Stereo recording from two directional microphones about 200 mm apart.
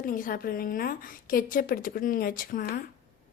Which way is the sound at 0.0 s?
45° left (ahead or behind).